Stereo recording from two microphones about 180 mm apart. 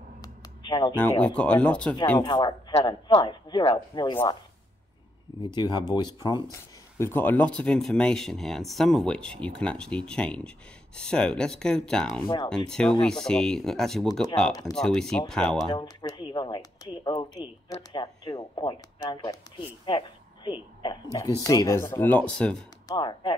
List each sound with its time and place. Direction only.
0.2 s a sound: 25° left (ahead or behind)
1.2 s speech: 5° left (ahead or behind)
2.1 s speech: 20° left (ahead or behind)
3.1 s a woman's voice: 35° left (ahead or behind)
3.4 s speech: 25° left (ahead or behind)
5.4 s speech: 25° left (ahead or behind); by 15.7 s 5° left (ahead or behind)
15.7 s speech: 20° left (ahead or behind)
19.9 s a sound: 25° left (ahead or behind)
20.8 s speech: 20° left (ahead or behind); by 22.6 s 5° left (ahead or behind)
22.8 s speech: 25° left (ahead or behind)